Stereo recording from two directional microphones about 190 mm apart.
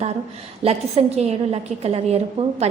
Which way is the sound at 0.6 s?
35° right (ahead or behind).